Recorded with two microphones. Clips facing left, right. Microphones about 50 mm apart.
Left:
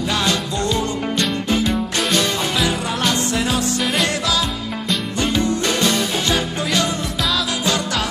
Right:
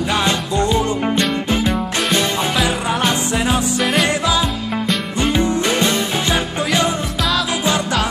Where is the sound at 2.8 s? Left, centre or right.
Centre.